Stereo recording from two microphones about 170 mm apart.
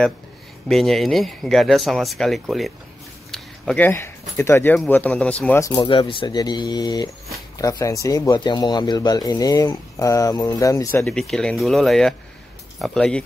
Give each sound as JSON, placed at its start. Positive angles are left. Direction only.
{"t": 0.7, "sound": "speech", "side_deg": 0}
{"t": 5.6, "sound": "speech", "side_deg": 25}